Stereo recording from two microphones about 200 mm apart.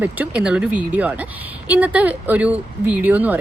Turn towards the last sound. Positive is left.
turn(degrees=-10)  # may be behind; listen again after turning